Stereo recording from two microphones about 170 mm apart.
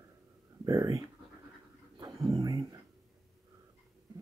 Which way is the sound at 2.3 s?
25° right (ahead or behind).